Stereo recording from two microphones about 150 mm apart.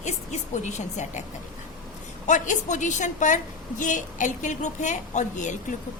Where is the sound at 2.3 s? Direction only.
55° left (ahead or behind).